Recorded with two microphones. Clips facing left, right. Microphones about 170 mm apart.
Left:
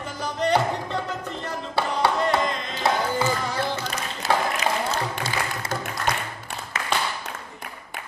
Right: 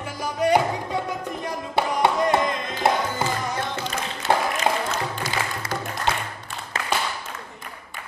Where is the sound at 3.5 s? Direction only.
30° left (ahead or behind).